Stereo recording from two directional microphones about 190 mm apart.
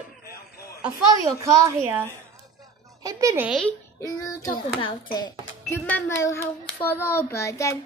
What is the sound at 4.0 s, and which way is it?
A child's voice, 20° left (ahead or behind).